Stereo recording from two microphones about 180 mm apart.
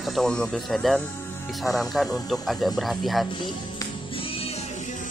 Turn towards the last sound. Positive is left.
turn(degrees=0)  # may be behind; listen again after turning